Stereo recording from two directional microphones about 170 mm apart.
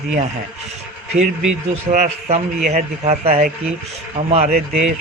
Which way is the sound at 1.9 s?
45° right (ahead or behind).